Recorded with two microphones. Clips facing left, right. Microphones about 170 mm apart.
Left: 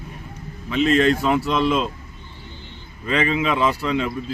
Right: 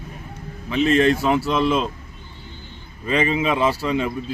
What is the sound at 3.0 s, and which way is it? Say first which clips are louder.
Speech: right 1 dB; 25° right (ahead or behind).